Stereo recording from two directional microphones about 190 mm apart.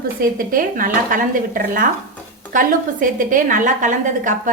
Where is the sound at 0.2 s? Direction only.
45° right (ahead or behind).